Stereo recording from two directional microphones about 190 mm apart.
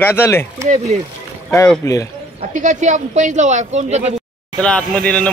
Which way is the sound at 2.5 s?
40° right (ahead or behind).